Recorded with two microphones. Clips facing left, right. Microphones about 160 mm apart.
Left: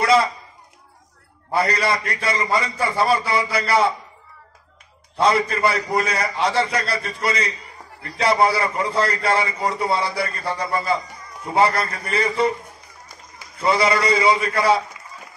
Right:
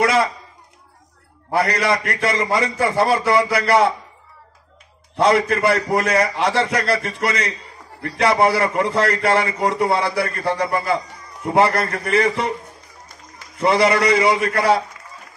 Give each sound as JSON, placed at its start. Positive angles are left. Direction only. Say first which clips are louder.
{"t": 1.6, "sound": "a man's voice", "louder": "right 2 dB", "side_deg": -65}
{"t": 5.2, "sound": "a man's voice", "louder": "right 2 dB", "side_deg": -65}
{"t": 13.7, "sound": "a man's voice", "louder": "right 3 dB", "side_deg": -65}